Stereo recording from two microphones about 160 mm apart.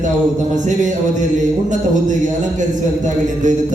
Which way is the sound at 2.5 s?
50° right (ahead or behind).